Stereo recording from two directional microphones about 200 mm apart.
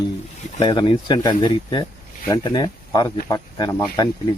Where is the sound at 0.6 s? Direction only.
25° left (ahead or behind).